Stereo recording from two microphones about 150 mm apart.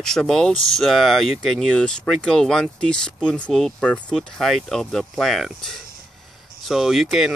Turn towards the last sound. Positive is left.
turn(degrees=0)  # may be behind; listen again after turning